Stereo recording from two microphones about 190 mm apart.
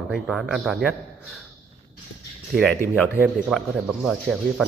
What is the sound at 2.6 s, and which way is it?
Speech, 5° left (ahead or behind).